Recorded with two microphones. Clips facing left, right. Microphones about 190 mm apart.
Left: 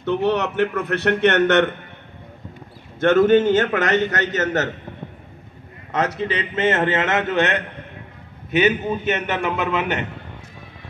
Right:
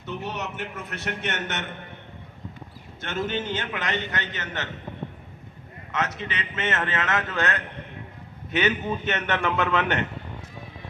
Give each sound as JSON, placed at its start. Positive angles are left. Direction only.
{"t": 0.0, "sound": "a man's voice", "side_deg": 70}
{"t": 3.0, "sound": "a man's voice", "side_deg": 50}
{"t": 5.9, "sound": "a man's voice", "side_deg": 35}
{"t": 8.5, "sound": "a man's voice", "side_deg": 10}